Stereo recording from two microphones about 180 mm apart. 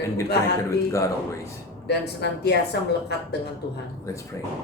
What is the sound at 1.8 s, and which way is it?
Speech, 65° left (ahead or behind).